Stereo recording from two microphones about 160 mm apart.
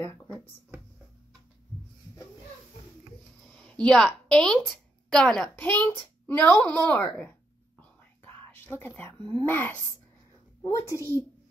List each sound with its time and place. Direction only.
3.5 s a woman's voice: 5° left (ahead or behind)
10.9 s a child's voice: 20° left (ahead or behind)